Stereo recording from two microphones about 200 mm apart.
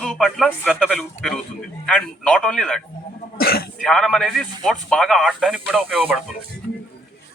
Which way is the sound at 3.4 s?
50° left (ahead or behind).